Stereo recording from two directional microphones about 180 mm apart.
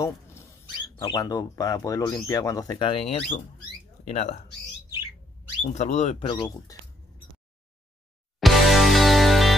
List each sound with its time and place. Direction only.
1.0 s speech: 20° left (ahead or behind); by 4.4 s 35° left (ahead or behind)
5.6 s speech: 40° left (ahead or behind); by 6.8 s 25° left (ahead or behind)
8.4 s music: centre (ahead or behind)